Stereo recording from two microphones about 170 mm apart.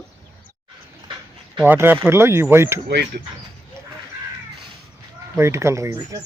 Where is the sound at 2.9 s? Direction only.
75° right (ahead or behind).